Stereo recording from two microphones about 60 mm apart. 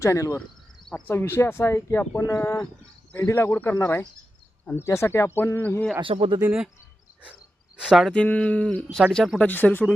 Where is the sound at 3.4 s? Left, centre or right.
Left.